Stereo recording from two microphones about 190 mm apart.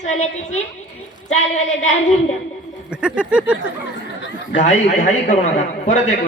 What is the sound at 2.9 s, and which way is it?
Speech, 5° right (ahead or behind).